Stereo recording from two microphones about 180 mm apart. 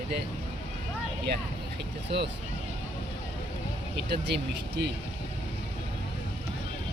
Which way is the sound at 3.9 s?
65° right (ahead or behind).